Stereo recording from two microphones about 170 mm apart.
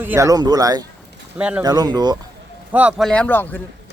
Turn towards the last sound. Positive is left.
turn(degrees=10)  # may be behind; listen again after turning